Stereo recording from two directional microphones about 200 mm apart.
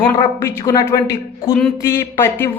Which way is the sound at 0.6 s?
20° left (ahead or behind).